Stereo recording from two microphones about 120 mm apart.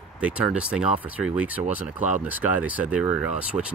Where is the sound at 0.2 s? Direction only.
10° right (ahead or behind).